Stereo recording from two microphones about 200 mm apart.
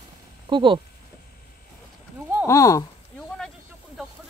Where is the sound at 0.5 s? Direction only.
25° right (ahead or behind).